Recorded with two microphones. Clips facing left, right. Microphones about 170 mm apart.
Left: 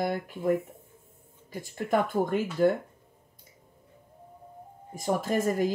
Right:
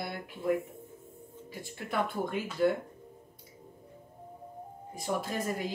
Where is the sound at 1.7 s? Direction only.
45° left (ahead or behind).